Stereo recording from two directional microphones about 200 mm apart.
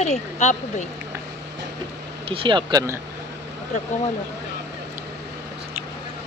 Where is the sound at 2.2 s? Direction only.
25° right (ahead or behind).